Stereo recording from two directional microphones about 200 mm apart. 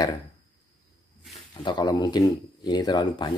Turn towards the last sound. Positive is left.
turn(degrees=20)  # may be behind; listen again after turning